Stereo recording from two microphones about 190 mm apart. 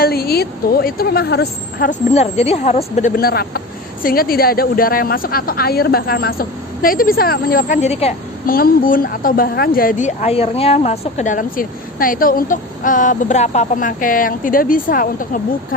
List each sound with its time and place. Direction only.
0.0 s a woman's voice: 55° left (ahead or behind)
1.9 s speech: 35° left (ahead or behind)
3.2 s a woman's voice: 55° left (ahead or behind)
7.8 s speech: 35° left (ahead or behind)
8.4 s a woman's voice: 50° left (ahead or behind)